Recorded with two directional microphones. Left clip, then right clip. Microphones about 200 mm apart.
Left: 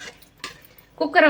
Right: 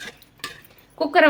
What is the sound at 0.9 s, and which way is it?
Speech, 10° right (ahead or behind).